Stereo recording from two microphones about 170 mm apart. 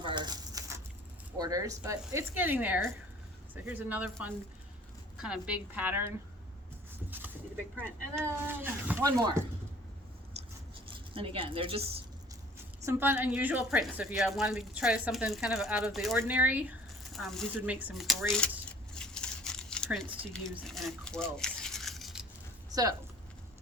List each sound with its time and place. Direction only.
0.0 s a sound: 30° right (ahead or behind)
1.4 s speech: 20° right (ahead or behind)
8.4 s speech: 10° right (ahead or behind)
10.8 s speech: 30° right (ahead or behind)
12.8 s a woman's voice: 15° right (ahead or behind)
16.1 s a woman's voice: 10° right (ahead or behind); by 18.5 s 5° left (ahead or behind)
18.9 s crumpling: 5° left (ahead or behind)
20.3 s a woman's voice: 5° left (ahead or behind)
21.3 s a sound: 5° left (ahead or behind)
22.7 s speech: 20° right (ahead or behind)